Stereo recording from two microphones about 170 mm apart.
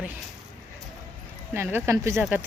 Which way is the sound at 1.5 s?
15° right (ahead or behind).